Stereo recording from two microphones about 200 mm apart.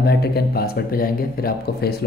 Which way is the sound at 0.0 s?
50° left (ahead or behind).